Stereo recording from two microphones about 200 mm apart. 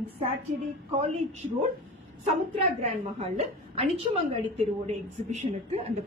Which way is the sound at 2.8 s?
30° right (ahead or behind).